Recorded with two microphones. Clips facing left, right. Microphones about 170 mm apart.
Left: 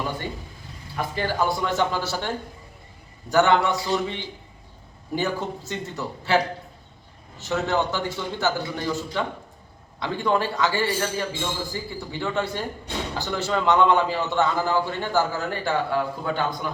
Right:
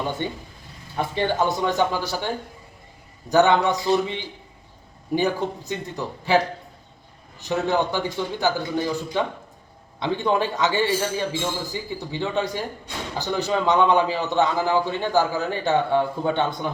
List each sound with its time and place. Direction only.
0.9 s a man's voice: 25° right (ahead or behind)